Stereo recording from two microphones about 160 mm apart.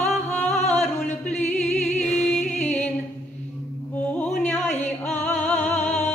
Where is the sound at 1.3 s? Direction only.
45° left (ahead or behind).